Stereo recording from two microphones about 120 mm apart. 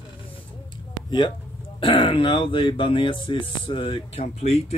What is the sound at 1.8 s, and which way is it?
Speech, 45° left (ahead or behind).